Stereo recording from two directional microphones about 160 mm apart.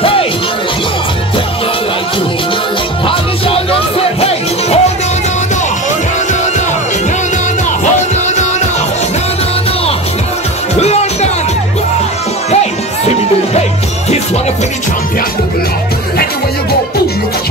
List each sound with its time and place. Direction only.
0.0 s music: 35° left (ahead or behind)
3.1 s music: 35° left (ahead or behind)
10.8 s music: 40° left (ahead or behind)